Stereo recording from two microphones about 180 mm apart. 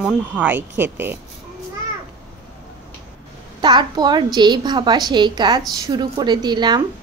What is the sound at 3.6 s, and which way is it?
Speech, 25° right (ahead or behind).